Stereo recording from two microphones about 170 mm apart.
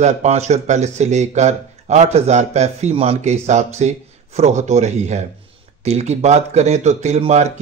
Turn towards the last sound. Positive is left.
turn(degrees=-40)  # may be behind; listen again after turning